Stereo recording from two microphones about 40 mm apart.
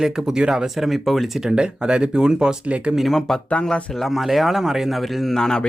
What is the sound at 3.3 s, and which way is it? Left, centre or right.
Speech, centre.